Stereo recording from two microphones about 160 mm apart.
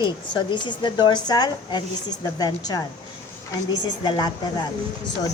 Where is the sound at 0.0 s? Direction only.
30° left (ahead or behind).